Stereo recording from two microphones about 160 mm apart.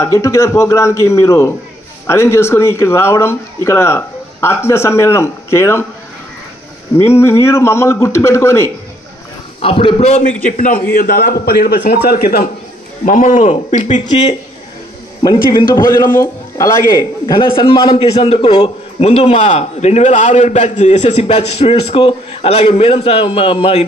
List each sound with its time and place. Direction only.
0.0 s speech: 20° left (ahead or behind)
7.0 s speech: 15° left (ahead or behind)
9.6 s a man's voice: 35° left (ahead or behind); by 12.4 s 70° left (ahead or behind)
13.0 s a man's voice: 55° left (ahead or behind)
15.5 s a man's voice: 25° left (ahead or behind)